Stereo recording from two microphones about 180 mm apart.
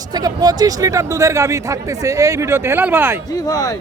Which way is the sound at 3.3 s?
20° left (ahead or behind).